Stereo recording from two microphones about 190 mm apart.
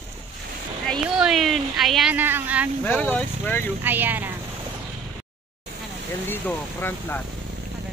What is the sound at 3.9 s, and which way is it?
Speech, 10° right (ahead or behind).